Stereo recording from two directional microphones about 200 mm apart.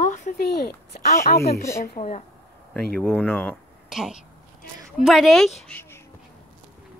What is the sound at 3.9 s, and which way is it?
Speech, centre (ahead or behind).